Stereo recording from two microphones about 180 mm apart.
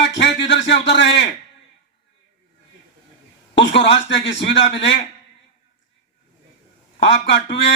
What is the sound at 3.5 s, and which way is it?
Speech, 80° left.